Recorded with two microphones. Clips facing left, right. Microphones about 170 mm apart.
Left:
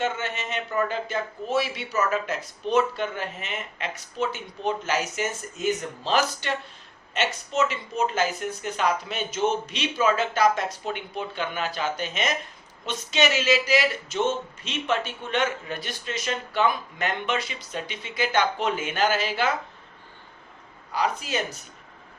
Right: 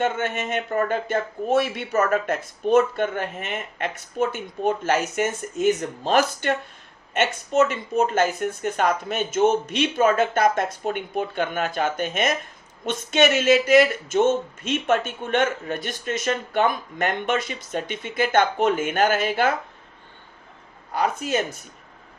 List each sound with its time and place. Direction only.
0.0 s speech: 50° right (ahead or behind)
20.9 s speech: 50° right (ahead or behind)